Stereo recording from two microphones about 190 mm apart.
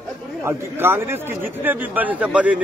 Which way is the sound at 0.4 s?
10° right (ahead or behind).